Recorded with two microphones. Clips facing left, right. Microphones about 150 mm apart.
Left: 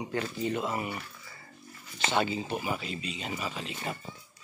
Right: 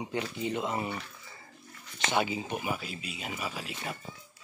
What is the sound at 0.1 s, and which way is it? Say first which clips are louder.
Speech: left 2 dB; 20° right (ahead or behind).